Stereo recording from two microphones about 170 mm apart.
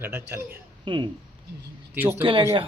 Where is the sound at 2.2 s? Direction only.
30° right (ahead or behind).